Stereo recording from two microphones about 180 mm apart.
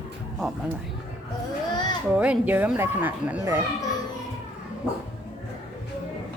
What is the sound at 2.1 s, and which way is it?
Speech, 5° right (ahead or behind).